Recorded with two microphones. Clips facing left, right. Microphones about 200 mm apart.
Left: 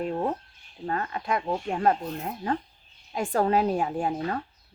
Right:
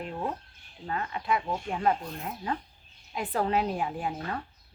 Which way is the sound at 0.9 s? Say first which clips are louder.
Left 2 dB; 45° left (ahead or behind).